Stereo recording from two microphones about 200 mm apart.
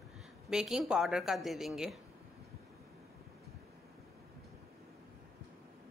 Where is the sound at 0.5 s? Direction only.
5° right (ahead or behind).